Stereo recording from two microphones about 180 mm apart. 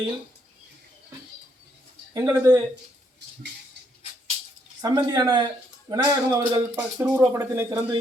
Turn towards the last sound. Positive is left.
turn(degrees=-15)  # may be behind; listen again after turning